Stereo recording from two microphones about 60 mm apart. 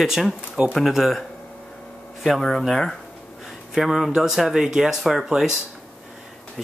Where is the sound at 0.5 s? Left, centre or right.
Right.